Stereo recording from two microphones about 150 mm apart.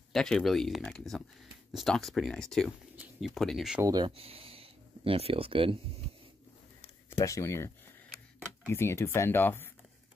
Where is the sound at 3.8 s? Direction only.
25° right (ahead or behind).